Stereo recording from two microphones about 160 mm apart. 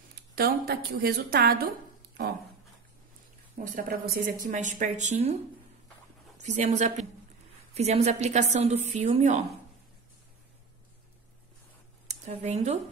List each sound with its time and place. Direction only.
0.4 s a woman's voice: 70° right (ahead or behind)
3.5 s speech: 60° right (ahead or behind)
4.5 s a woman's voice: 50° right (ahead or behind)
12.1 s speech: 45° right (ahead or behind)